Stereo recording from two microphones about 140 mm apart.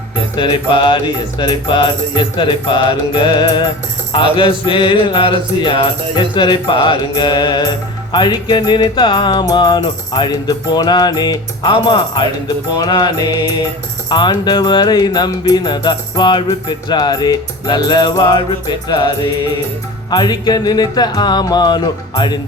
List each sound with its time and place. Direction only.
0.3 s music: 35° left (ahead or behind)
20.1 s music: 30° left (ahead or behind)